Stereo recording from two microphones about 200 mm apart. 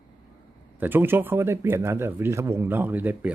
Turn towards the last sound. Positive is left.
turn(degrees=-10)  # may be behind; listen again after turning